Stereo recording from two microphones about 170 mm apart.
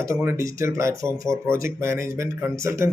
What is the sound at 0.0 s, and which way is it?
Speech, 15° right (ahead or behind).